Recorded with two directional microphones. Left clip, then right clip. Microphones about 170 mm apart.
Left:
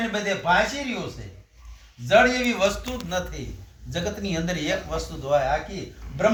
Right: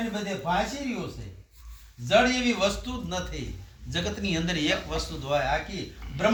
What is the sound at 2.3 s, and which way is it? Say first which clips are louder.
A man's voice: left 3 dB; 5° left (ahead or behind).